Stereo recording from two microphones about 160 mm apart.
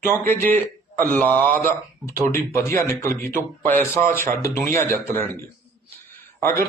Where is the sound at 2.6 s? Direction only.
15° left (ahead or behind).